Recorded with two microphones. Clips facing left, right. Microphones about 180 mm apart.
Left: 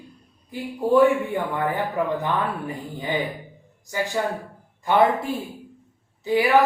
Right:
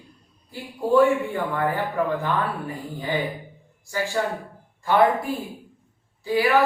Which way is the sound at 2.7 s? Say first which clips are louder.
Even; 20° left (ahead or behind).